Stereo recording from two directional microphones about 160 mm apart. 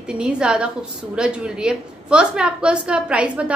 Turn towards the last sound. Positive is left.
turn(degrees=-5)  # may be behind; listen again after turning